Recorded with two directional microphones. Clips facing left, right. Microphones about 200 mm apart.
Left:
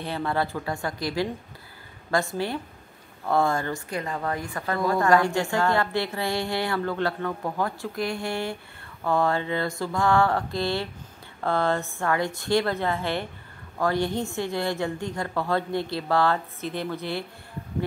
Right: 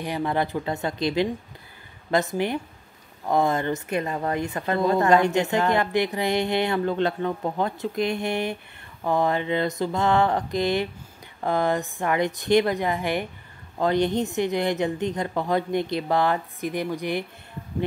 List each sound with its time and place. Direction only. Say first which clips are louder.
0.0 s a woman's voice: right 2 dB; 15° right (ahead or behind)